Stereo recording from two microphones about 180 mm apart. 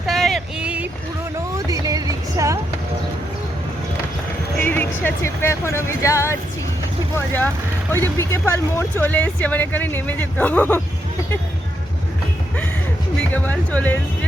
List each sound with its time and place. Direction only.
0.1 s a sound: centre (ahead or behind)
1.5 s music: 20° right (ahead or behind)
4.6 s speech: 10° left (ahead or behind)
13.1 s speech: 10° left (ahead or behind)